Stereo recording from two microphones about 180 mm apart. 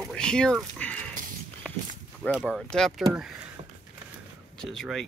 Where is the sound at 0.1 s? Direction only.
5° left (ahead or behind).